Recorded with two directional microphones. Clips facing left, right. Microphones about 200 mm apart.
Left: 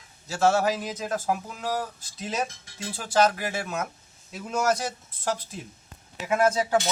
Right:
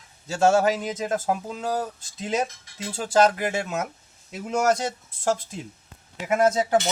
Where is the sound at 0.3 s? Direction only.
25° right (ahead or behind).